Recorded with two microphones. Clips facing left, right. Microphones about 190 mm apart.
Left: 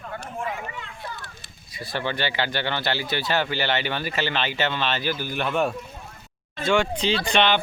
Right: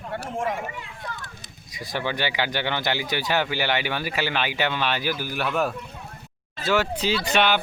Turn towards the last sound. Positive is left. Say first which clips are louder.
# left 1 dB
turn(degrees=-5)  # may be behind; listen again after turning